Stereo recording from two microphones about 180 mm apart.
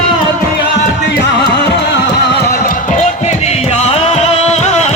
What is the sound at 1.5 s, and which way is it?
Music, 65° left (ahead or behind).